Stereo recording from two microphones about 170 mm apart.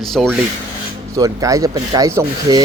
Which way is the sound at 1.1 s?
20° right (ahead or behind).